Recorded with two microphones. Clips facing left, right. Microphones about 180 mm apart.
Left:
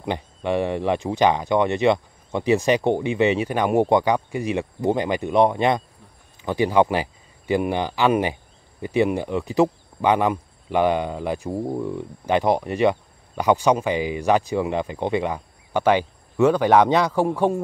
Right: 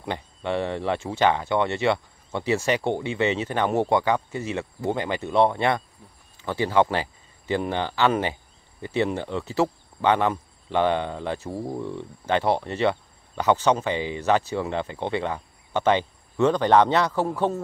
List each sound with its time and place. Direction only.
0.0 s speech: 15° left (ahead or behind)